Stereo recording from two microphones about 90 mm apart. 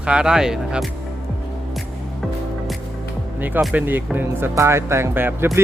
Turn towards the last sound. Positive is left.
turn(degrees=-25)  # may be behind; listen again after turning